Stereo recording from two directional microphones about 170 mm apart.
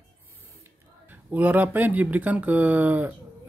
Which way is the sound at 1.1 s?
10° right (ahead or behind).